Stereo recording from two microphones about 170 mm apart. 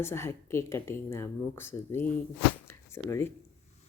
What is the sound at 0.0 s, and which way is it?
Speech, 15° left (ahead or behind).